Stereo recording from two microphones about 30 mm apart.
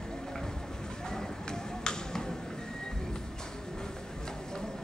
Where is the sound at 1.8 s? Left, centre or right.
Left.